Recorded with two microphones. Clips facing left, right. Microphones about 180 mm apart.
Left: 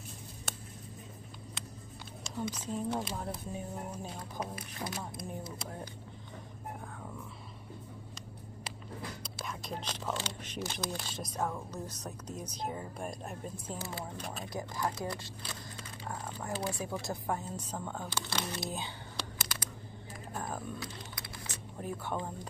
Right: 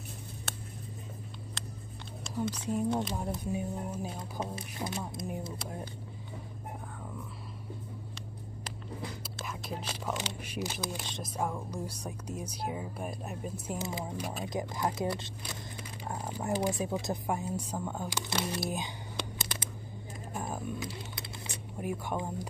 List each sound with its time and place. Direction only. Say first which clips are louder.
2.2 s speech: right 4 dB; centre (ahead or behind)
4.2 s speech: right 2 dB; 25° right (ahead or behind)
9.2 s speech: right 1 dB; 5° right (ahead or behind)
13.7 s speech: right 5 dB; 15° right (ahead or behind)
18.7 s whispering: right 3 dB; 20° right (ahead or behind)
20.5 s speech: right 3 dB; 15° right (ahead or behind)